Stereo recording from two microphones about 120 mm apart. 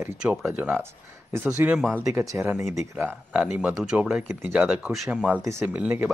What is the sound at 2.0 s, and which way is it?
Speech, 20° right (ahead or behind).